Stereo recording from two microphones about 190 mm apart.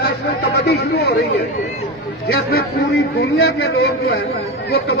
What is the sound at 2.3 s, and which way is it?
Speech, 55° left (ahead or behind).